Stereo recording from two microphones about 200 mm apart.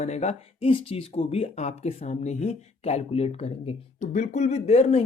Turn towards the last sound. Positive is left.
turn(degrees=30)  # may be behind; listen again after turning